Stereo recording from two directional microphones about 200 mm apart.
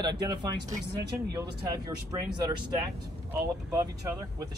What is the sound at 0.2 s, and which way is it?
Speech, 20° right (ahead or behind).